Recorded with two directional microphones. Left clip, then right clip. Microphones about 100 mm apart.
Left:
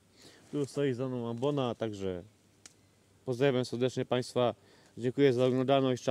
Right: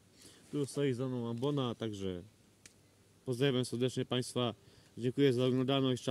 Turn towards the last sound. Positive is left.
turn(degrees=-40)  # may be behind; listen again after turning